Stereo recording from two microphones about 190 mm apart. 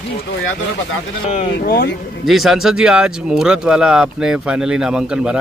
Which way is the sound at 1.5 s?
50° left (ahead or behind).